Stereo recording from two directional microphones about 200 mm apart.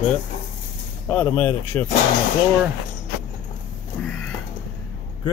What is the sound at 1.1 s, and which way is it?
Speech, 10° left (ahead or behind).